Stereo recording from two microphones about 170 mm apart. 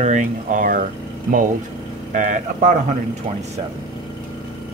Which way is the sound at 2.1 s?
50° right (ahead or behind).